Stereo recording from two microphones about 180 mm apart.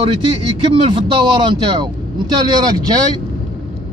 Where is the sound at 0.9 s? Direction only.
25° right (ahead or behind).